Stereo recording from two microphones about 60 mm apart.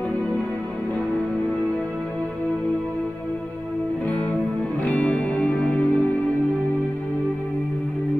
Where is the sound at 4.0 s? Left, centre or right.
Left.